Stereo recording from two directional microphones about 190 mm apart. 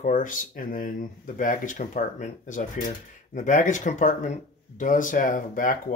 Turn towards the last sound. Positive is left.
turn(degrees=45)  # may be behind; listen again after turning